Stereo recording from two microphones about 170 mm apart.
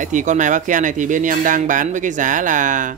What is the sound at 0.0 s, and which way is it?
Speech, 45° right (ahead or behind).